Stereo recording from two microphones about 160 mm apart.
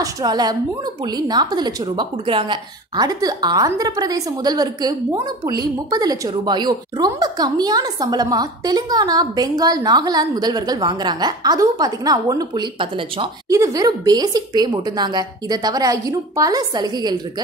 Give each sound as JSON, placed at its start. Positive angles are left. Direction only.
{"t": 0.0, "sound": "a woman's voice", "side_deg": -25}